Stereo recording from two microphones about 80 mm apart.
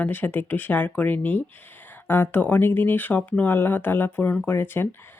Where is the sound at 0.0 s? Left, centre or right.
Left.